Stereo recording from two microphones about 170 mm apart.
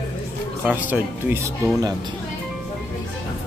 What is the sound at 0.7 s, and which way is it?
Speech, 10° right (ahead or behind).